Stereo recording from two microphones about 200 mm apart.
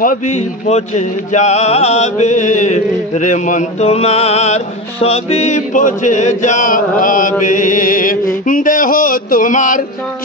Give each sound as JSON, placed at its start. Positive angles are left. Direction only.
{"t": 0.0, "sound": "music", "side_deg": 40}